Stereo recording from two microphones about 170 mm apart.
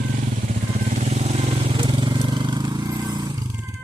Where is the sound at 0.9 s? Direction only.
45° right (ahead or behind); by 3.4 s 20° right (ahead or behind).